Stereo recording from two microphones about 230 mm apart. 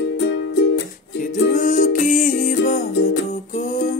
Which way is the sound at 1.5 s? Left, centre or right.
Left.